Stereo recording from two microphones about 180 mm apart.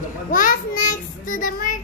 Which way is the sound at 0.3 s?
50° left (ahead or behind).